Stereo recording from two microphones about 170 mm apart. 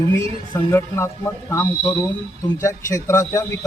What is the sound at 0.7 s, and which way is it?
Speech, 15° left (ahead or behind).